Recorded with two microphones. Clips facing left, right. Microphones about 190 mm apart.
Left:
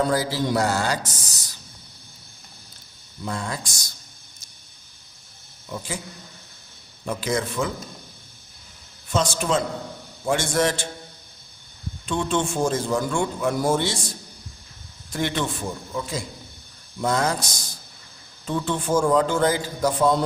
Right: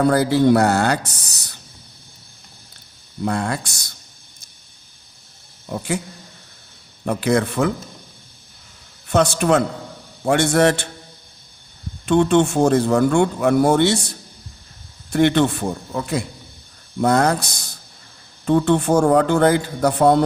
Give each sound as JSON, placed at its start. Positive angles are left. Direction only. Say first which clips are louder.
{"t": 0.0, "sound": "speech", "louder": "right 8 dB", "side_deg": -60}
{"t": 3.2, "sound": "speech", "louder": "right 7 dB", "side_deg": -65}
{"t": 5.6, "sound": "speech", "louder": "right 8 dB", "side_deg": -60}
{"t": 7.0, "sound": "speech", "louder": "right 7 dB", "side_deg": -60}
{"t": 9.0, "sound": "speech", "louder": "right 7 dB", "side_deg": -65}
{"t": 12.0, "sound": "speech", "louder": "right 9 dB", "side_deg": -65}